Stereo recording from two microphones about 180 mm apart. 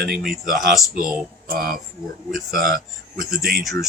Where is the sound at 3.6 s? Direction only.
Centre (ahead or behind).